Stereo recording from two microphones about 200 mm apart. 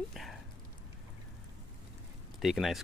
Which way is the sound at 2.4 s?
Centre (ahead or behind).